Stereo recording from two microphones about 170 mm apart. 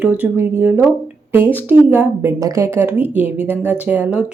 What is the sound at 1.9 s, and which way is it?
Speech, 15° right (ahead or behind).